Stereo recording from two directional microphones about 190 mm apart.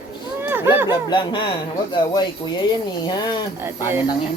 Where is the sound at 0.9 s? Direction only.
25° left (ahead or behind).